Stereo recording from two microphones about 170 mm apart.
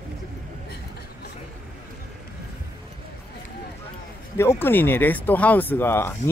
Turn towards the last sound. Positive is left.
turn(degrees=15)  # may be behind; listen again after turning